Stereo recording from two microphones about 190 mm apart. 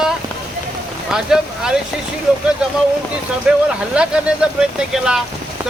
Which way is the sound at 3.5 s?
5° right (ahead or behind).